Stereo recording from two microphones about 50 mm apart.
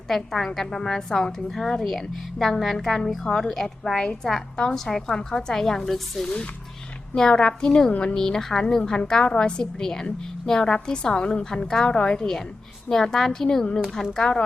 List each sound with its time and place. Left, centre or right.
0.1 s a woman's voice: centre